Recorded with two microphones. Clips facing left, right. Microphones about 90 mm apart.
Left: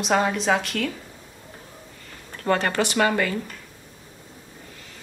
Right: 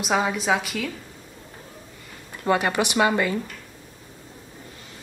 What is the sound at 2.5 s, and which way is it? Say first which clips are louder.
Speech: even; 15° right (ahead or behind).